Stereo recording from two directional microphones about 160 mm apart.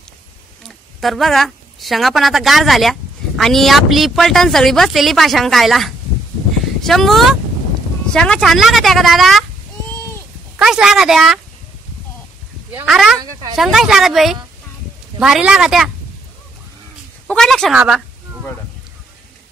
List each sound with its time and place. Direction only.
0.7 s a woman's voice: centre (ahead or behind)
10.6 s a woman's voice: 5° right (ahead or behind)
12.8 s a woman's voice: centre (ahead or behind)
13.2 s speech: 25° right (ahead or behind)
13.6 s a woman's voice: centre (ahead or behind)
17.3 s a woman's voice: 5° left (ahead or behind)